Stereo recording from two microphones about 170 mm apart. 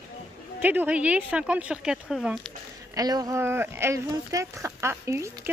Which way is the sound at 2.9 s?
20° right (ahead or behind).